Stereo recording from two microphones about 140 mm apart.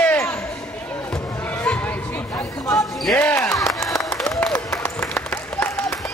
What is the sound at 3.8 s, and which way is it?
Applause, 20° left (ahead or behind).